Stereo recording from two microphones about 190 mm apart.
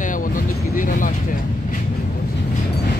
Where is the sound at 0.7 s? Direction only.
45° left (ahead or behind).